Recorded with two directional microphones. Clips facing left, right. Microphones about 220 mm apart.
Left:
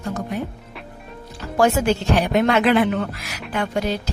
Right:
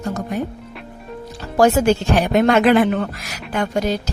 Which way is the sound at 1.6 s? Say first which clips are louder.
Right 4 dB; 40° right (ahead or behind).